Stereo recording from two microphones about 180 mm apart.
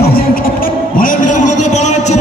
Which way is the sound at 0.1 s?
55° left (ahead or behind).